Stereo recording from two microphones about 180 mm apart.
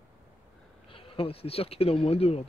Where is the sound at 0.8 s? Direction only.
30° left (ahead or behind).